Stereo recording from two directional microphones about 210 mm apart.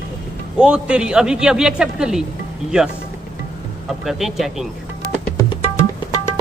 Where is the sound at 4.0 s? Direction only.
Centre (ahead or behind).